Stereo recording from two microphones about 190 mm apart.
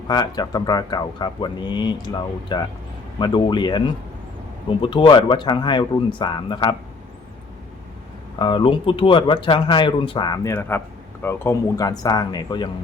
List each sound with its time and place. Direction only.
0.1 s speech: 20° left (ahead or behind)
8.4 s speech: 25° left (ahead or behind)